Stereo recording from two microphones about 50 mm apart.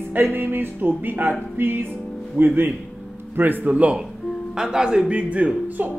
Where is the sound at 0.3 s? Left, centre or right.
Right.